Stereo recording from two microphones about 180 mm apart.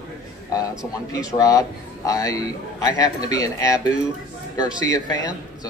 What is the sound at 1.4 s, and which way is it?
A man's voice, 20° left (ahead or behind).